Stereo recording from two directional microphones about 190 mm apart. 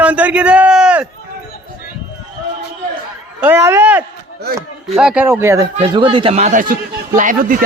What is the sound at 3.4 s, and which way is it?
A man's voice, 15° right (ahead or behind).